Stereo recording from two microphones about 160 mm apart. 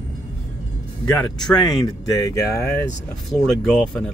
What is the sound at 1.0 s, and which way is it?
Speech, 25° left (ahead or behind).